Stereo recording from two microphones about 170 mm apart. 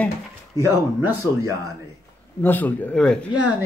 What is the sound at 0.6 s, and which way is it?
Speech, 20° right (ahead or behind).